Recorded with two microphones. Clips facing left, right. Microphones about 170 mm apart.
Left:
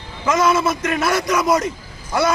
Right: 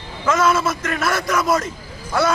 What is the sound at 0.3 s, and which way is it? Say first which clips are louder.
A man's voice: left 1 dB; 15° left (ahead or behind).